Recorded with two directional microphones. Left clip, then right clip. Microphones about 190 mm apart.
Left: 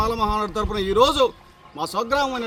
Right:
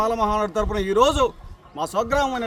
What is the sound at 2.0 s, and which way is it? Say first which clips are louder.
Speech: even; 5° right (ahead or behind).